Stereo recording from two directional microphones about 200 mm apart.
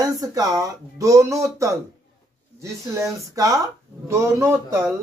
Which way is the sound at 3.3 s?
15° right (ahead or behind).